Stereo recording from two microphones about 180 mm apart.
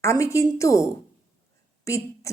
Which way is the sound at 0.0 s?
15° left (ahead or behind).